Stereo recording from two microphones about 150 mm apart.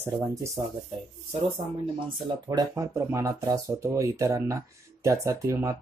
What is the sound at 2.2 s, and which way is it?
Speech, 25° right (ahead or behind).